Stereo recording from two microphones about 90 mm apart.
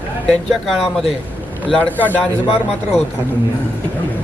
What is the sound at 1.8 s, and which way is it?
Speech, 20° left (ahead or behind).